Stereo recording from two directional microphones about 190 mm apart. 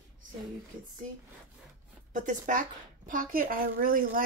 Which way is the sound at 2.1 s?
40° right (ahead or behind).